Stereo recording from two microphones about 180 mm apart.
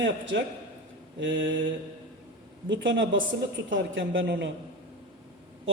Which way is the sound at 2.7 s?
90° right.